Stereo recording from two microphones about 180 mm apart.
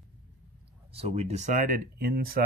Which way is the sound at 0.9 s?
35° right (ahead or behind).